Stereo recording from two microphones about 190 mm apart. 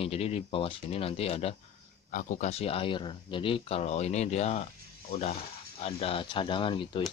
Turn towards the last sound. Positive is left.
turn(degrees=25)  # may be behind; listen again after turning